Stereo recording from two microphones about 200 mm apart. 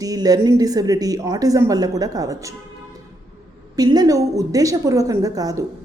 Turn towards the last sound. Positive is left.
turn(degrees=-15)  # may be behind; listen again after turning